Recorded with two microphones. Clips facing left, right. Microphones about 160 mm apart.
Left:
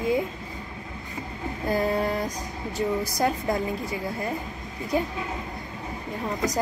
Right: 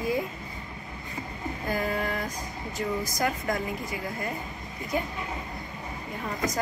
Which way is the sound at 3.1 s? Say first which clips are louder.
Left 3 dB; 30° left (ahead or behind).